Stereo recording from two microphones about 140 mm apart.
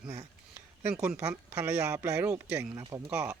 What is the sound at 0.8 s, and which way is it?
Speech, 15° right (ahead or behind).